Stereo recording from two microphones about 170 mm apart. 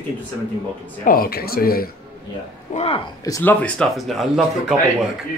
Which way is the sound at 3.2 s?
20° left (ahead or behind).